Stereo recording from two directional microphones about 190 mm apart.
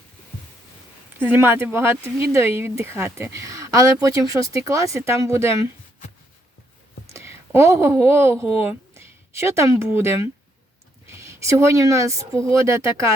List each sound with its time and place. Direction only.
1.2 s speech: 10° right (ahead or behind)
7.1 s a sound: 15° right (ahead or behind)
8.0 s a woman's voice: 15° right (ahead or behind)